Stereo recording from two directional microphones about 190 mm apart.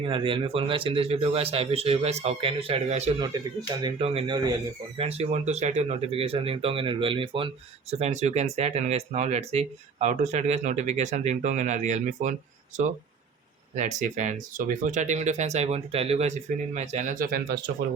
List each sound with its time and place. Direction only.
0.1 s speech: 25° right (ahead or behind)
3.2 s speech: 20° right (ahead or behind); by 12.3 s 40° right (ahead or behind)
13.7 s speech: 40° right (ahead or behind)